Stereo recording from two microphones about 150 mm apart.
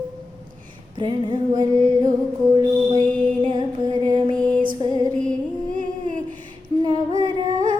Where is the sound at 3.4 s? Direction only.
30° right (ahead or behind).